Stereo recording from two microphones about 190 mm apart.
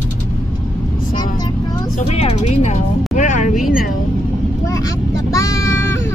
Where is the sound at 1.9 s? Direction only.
35° left (ahead or behind).